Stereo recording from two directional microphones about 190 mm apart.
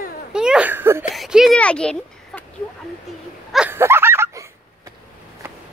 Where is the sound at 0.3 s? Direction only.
5° right (ahead or behind).